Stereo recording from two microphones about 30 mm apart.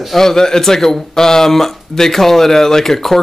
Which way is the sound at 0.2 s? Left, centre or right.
Centre.